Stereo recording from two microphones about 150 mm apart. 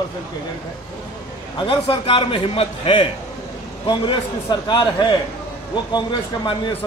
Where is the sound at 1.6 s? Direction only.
35° left (ahead or behind).